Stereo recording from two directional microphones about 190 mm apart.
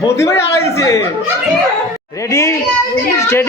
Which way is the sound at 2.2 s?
15° left (ahead or behind).